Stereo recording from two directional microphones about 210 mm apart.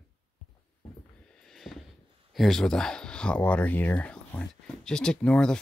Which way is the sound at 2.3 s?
Centre (ahead or behind).